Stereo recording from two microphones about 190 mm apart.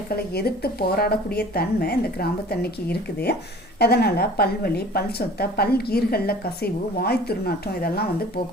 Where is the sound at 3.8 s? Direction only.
60° left (ahead or behind).